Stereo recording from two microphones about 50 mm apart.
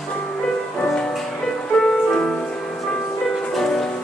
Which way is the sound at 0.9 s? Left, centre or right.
Centre.